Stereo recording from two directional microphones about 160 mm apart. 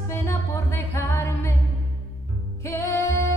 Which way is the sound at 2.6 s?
20° left (ahead or behind).